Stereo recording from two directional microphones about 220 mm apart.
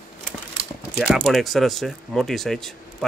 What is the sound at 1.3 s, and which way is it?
Speech, centre (ahead or behind).